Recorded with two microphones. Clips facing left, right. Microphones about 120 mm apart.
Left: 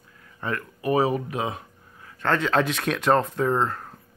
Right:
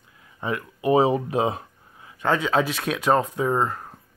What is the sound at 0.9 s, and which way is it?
Speech, 25° right (ahead or behind).